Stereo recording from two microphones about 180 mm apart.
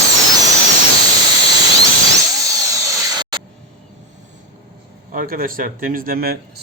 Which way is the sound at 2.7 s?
15° right (ahead or behind).